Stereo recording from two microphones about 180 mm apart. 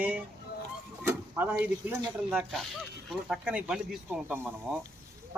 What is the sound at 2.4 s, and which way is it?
Speech, centre (ahead or behind).